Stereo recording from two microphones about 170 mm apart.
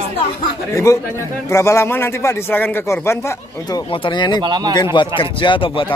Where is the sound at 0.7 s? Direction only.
20° left (ahead or behind).